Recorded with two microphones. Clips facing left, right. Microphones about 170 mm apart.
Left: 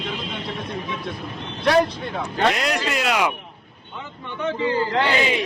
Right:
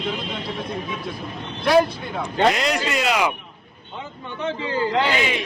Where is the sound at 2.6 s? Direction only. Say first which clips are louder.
Right 1 dB; centre (ahead or behind).